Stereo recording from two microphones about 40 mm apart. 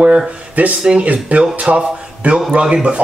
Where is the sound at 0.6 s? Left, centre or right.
Right.